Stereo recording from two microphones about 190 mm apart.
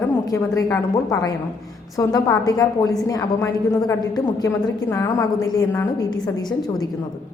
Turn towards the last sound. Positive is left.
turn(degrees=20)  # may be behind; listen again after turning